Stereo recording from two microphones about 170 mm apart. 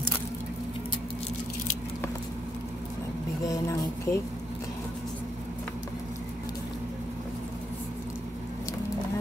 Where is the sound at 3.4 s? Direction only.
15° left (ahead or behind).